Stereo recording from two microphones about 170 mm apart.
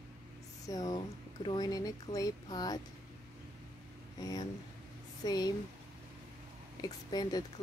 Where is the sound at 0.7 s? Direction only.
25° left (ahead or behind).